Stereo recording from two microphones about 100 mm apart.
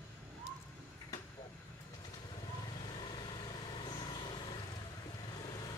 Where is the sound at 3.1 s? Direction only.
50° left (ahead or behind).